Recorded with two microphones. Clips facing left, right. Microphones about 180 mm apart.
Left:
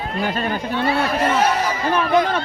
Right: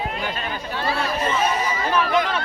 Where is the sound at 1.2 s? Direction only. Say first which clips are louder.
Left 3 dB; 75° left (ahead or behind).